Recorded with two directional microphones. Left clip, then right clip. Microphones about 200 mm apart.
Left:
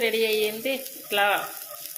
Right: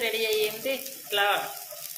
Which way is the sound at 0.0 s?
35° left (ahead or behind).